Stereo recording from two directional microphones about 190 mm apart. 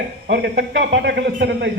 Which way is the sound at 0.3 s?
60° right (ahead or behind).